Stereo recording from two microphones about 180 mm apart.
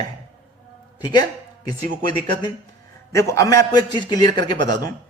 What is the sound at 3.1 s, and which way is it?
A man's voice, 15° left (ahead or behind).